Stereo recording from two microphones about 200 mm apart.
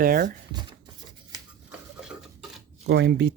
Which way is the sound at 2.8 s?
55° right (ahead or behind).